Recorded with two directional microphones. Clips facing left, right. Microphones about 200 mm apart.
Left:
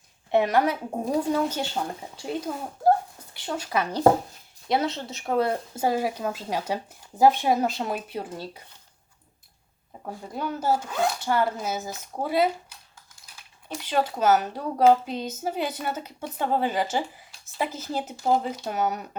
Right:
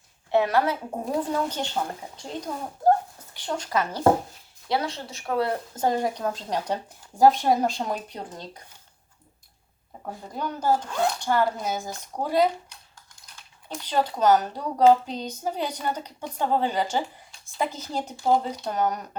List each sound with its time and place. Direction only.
0.3 s speech: 20° left (ahead or behind)
5.7 s a woman's voice: 5° left (ahead or behind)
10.3 s a woman's voice: 5° left (ahead or behind)
13.2 s a sound: 5° left (ahead or behind)
14.1 s a woman's voice: 5° left (ahead or behind)